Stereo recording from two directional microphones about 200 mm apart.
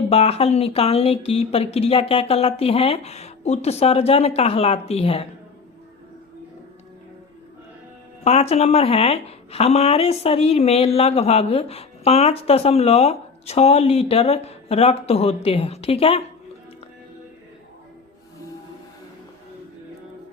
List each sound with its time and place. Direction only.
0.1 s speech: 30° left (ahead or behind)
8.2 s speech: 30° left (ahead or behind)